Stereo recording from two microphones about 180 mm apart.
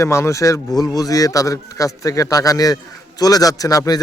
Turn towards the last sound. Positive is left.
turn(degrees=20)  # may be behind; listen again after turning